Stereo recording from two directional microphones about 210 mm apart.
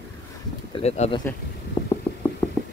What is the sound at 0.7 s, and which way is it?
Speech, 30° left (ahead or behind).